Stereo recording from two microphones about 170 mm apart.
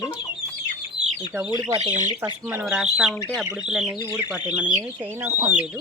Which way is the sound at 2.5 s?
10° right (ahead or behind).